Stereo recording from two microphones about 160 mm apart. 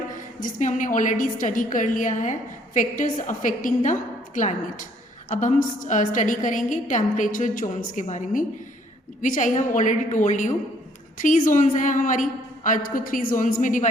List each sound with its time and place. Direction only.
0.1 s a woman's voice: 55° left (ahead or behind)